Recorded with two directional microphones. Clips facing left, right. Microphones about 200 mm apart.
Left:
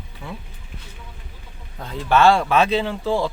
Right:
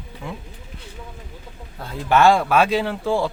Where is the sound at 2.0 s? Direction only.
15° right (ahead or behind).